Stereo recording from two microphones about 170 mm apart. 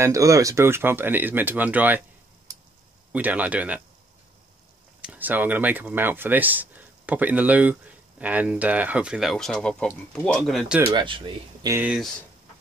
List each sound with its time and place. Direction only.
0.0 s speech: 20° right (ahead or behind)
3.1 s speech: 10° right (ahead or behind)
5.0 s speech: 10° right (ahead or behind)
10.9 s speech: 30° right (ahead or behind)
11.7 s speech: 10° right (ahead or behind)